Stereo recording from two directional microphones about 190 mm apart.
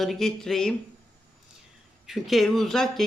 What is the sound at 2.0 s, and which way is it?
Speech, centre (ahead or behind).